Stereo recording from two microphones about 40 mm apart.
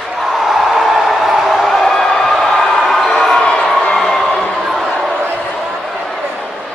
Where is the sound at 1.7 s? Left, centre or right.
Centre.